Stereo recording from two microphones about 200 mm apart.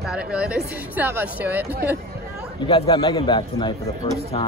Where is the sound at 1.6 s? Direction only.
55° right (ahead or behind).